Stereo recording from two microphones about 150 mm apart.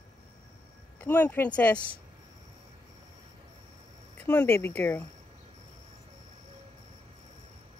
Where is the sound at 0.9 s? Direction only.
15° left (ahead or behind).